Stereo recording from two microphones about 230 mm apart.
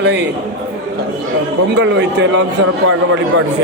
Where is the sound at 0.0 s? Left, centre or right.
Right.